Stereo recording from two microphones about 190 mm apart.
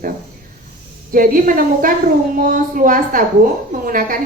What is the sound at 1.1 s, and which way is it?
A woman's voice, 45° right (ahead or behind).